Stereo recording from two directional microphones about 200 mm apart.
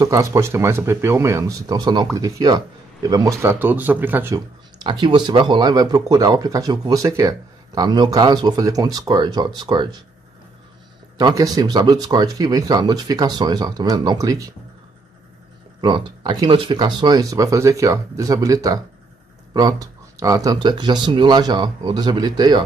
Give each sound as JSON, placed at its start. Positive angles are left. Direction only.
{"t": 0.0, "sound": "speech", "side_deg": -15}
{"t": 4.8, "sound": "speech", "side_deg": -25}
{"t": 11.1, "sound": "speech", "side_deg": -20}
{"t": 15.8, "sound": "speech", "side_deg": -25}